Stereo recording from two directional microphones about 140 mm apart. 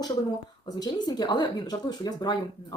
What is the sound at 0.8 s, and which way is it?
Speech, 30° left (ahead or behind).